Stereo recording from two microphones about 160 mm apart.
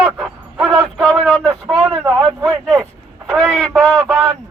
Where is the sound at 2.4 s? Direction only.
Centre (ahead or behind).